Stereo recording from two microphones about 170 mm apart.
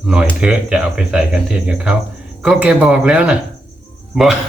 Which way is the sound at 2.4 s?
5° right (ahead or behind).